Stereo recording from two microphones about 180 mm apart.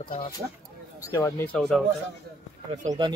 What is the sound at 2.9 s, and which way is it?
Speech, 25° right (ahead or behind).